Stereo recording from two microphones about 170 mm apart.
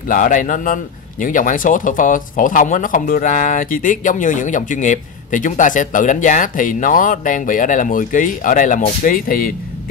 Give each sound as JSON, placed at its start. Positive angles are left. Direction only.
{"t": 0.1, "sound": "speech", "side_deg": 50}